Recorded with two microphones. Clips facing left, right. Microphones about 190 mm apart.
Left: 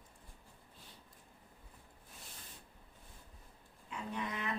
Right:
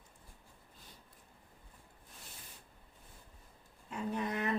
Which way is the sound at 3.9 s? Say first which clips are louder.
Right 5 dB; 45° right (ahead or behind).